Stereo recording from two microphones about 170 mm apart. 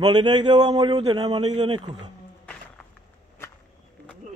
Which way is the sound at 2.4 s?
5° left (ahead or behind).